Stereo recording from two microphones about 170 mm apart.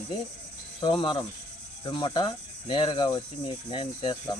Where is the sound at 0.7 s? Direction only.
30° left (ahead or behind).